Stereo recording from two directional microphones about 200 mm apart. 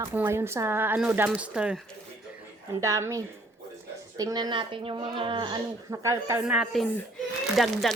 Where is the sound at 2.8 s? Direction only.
15° right (ahead or behind).